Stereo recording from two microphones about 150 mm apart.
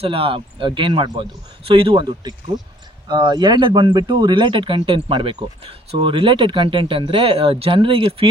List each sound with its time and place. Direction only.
0.0 s speech: 40° right (ahead or behind)